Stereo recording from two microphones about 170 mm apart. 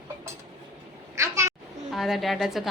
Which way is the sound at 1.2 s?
15° right (ahead or behind).